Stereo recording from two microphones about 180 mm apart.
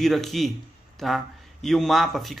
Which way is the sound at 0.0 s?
Centre (ahead or behind).